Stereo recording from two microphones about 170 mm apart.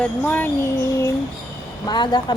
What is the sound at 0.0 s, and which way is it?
Speech, 10° left (ahead or behind).